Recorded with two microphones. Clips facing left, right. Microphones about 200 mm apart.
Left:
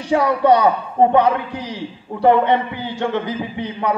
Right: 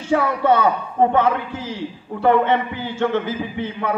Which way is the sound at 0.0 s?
15° left (ahead or behind).